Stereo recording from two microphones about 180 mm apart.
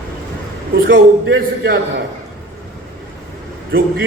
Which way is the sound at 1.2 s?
80° right.